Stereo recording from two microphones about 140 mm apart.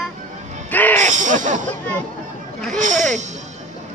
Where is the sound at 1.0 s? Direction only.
60° right (ahead or behind).